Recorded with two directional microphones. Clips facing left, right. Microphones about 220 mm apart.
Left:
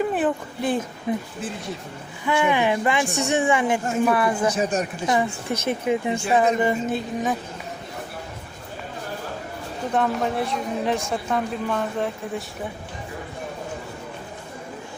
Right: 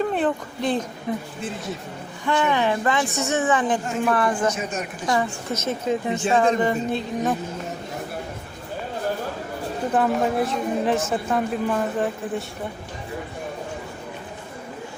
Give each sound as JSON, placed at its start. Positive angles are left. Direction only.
{"t": 0.0, "sound": "a woman's voice", "side_deg": 5}
{"t": 2.2, "sound": "a woman's voice", "side_deg": 10}
{"t": 4.5, "sound": "a woman's voice", "side_deg": 35}
{"t": 5.2, "sound": "a woman's voice", "side_deg": 15}
{"t": 9.9, "sound": "a woman's voice", "side_deg": -5}